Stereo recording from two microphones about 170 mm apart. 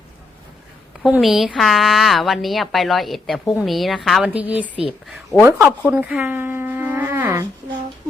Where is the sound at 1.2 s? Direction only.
Centre (ahead or behind).